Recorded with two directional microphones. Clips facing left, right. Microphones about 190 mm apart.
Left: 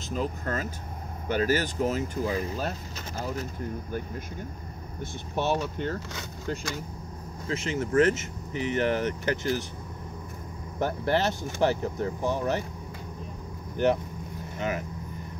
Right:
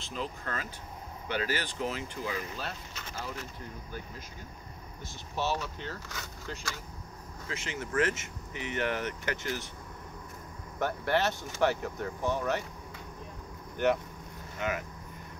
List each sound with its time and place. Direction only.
0.0 s speech: 45° left (ahead or behind)
3.9 s speech: 55° left (ahead or behind)
7.4 s speech: 40° left (ahead or behind)
10.8 s speech: 35° left (ahead or behind)
14.6 s speech: 30° left (ahead or behind)